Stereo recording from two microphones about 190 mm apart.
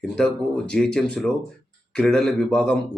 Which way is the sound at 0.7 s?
5° left (ahead or behind).